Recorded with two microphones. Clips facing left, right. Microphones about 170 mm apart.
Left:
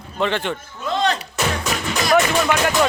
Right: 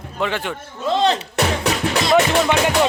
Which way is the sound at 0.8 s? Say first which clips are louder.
Right 3 dB; 25° right (ahead or behind).